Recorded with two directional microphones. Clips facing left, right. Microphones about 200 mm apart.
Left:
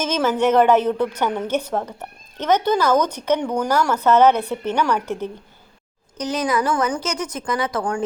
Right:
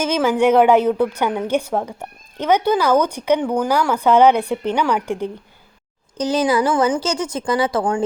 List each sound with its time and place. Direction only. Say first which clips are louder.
0.0 s a woman's voice: right 3 dB; 10° right (ahead or behind)
6.1 s a woman's voice: right 4 dB; 30° right (ahead or behind)